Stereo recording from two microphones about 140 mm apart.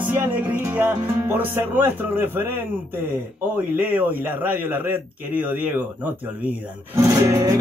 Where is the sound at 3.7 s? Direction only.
10° right (ahead or behind).